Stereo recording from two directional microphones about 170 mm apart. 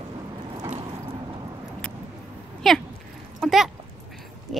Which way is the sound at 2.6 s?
Centre (ahead or behind).